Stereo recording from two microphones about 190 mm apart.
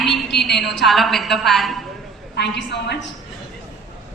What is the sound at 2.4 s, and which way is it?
Speech, 60° left (ahead or behind).